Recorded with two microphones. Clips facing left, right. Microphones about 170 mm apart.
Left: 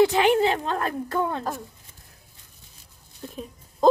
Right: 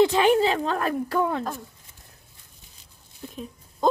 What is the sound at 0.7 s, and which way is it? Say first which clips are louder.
Speech: right 2 dB; 25° left (ahead or behind).